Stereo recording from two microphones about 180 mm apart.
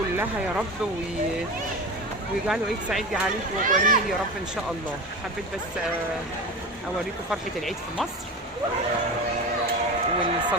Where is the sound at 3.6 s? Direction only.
45° right (ahead or behind).